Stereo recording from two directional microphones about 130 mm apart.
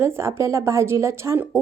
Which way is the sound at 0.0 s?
20° right (ahead or behind).